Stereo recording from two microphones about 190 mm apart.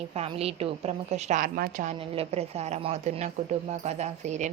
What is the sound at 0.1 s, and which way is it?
A woman's voice, 30° right (ahead or behind).